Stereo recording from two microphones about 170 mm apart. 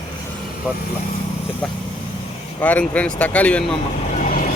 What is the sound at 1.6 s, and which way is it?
Speech, 5° left (ahead or behind).